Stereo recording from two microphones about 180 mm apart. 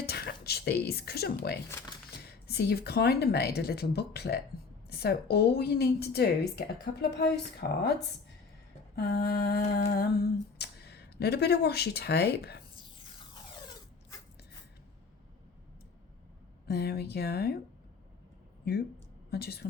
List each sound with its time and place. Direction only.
0.0 s a sound: 60° left (ahead or behind)
2.2 s a woman's voice: 60° left (ahead or behind)
9.0 s humming: 65° left (ahead or behind)
13.1 s a sound: 25° left (ahead or behind)
16.6 s a woman's voice: 60° left (ahead or behind)
18.6 s a woman's voice: 60° left (ahead or behind)